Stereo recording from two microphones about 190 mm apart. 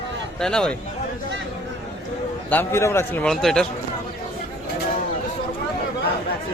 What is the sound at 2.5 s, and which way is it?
A man's voice, 10° left (ahead or behind).